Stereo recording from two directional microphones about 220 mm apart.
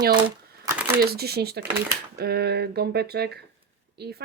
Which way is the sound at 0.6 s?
10° right (ahead or behind).